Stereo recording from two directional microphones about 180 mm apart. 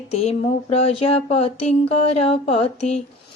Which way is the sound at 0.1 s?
35° left (ahead or behind).